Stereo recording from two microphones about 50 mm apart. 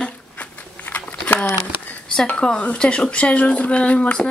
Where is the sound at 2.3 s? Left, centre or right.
Centre.